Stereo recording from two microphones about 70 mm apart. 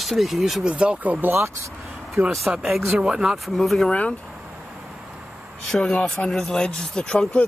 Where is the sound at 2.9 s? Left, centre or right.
Centre.